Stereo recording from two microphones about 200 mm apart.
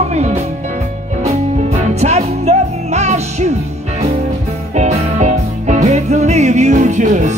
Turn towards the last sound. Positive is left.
turn(degrees=-35)  # may be behind; listen again after turning